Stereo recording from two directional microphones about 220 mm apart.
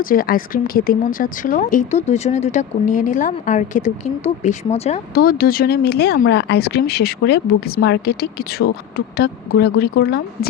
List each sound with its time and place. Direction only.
0.0 s speech: 40° left (ahead or behind)
5.1 s speech: 40° left (ahead or behind)